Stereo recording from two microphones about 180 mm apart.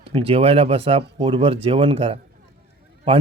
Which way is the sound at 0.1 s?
30° right (ahead or behind).